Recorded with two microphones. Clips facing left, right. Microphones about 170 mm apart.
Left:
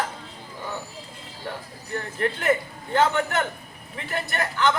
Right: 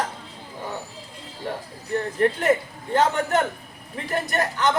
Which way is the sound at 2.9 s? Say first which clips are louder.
Right 1 dB; 40° right (ahead or behind).